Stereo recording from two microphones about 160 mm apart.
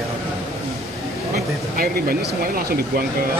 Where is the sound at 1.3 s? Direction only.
65° right (ahead or behind).